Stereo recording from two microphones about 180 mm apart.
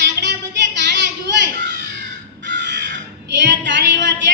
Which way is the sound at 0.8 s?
75° right (ahead or behind).